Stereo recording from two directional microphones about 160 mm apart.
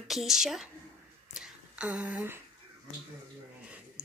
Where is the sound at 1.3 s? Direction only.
5° right (ahead or behind).